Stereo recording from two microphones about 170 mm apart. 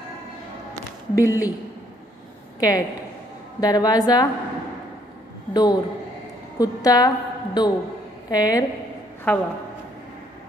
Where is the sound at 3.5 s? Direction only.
25° left (ahead or behind).